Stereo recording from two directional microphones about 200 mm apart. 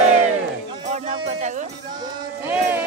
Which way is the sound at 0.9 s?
40° right (ahead or behind).